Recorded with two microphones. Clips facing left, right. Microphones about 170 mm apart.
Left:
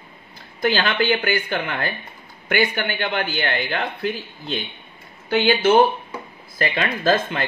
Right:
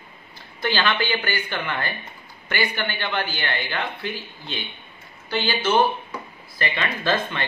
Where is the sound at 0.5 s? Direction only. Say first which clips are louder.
Left 3 dB; 45° left (ahead or behind).